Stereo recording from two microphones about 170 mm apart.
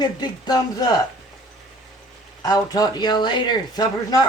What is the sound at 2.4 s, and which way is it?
Speech, 20° left (ahead or behind).